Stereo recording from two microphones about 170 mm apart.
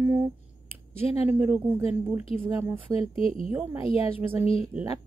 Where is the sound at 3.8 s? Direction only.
35° left (ahead or behind).